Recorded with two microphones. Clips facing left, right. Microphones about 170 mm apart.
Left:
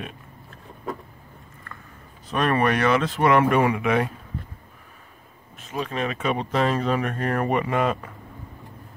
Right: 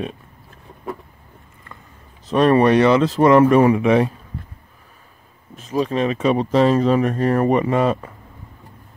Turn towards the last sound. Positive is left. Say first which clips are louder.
# right 6 dB
turn(degrees=-35)  # may be behind; listen again after turning